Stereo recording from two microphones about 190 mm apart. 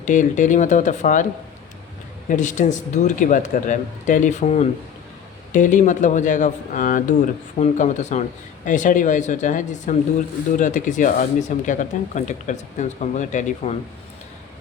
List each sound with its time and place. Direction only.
0.0 s speech: 40° left (ahead or behind)
2.3 s speech: 40° left (ahead or behind)